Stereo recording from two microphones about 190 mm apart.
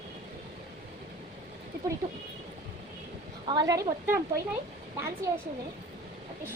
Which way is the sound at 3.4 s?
20° right (ahead or behind).